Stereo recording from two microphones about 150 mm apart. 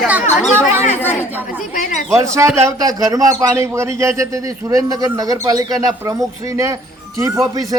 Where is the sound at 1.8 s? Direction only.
60° left (ahead or behind).